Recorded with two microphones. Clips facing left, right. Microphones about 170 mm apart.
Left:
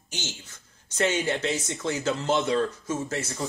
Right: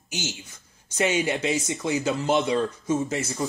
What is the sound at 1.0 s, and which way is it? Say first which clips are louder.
Speech: right 1 dB; 10° right (ahead or behind).